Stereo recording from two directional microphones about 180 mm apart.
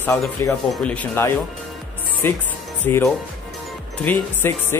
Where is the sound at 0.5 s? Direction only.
Centre (ahead or behind).